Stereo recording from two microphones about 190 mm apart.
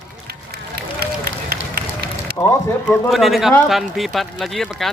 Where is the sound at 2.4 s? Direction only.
15° left (ahead or behind).